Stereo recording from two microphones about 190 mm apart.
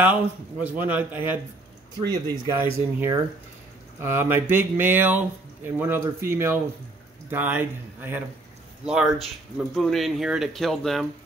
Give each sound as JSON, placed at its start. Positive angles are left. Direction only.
{"t": 0.0, "sound": "speech", "side_deg": -10}